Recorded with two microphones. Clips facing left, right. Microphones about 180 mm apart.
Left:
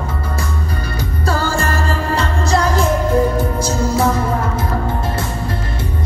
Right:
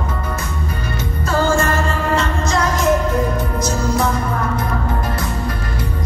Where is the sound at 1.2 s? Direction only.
35° left (ahead or behind).